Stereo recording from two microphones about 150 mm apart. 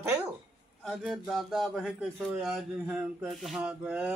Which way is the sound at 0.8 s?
5° right (ahead or behind).